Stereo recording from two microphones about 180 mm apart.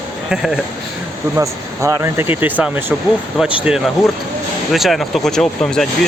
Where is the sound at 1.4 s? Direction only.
20° right (ahead or behind).